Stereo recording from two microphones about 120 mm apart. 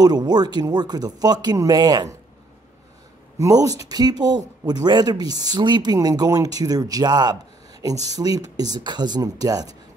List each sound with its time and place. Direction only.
0.0 s speech: 35° right (ahead or behind)
3.3 s speech: 30° right (ahead or behind)